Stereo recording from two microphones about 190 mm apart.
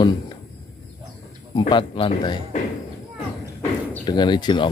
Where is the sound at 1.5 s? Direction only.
25° left (ahead or behind).